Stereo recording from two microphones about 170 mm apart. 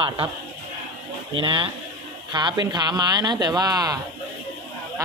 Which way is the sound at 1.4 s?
30° right (ahead or behind).